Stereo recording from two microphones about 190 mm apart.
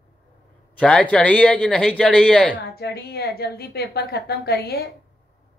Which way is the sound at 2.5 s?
55° left (ahead or behind).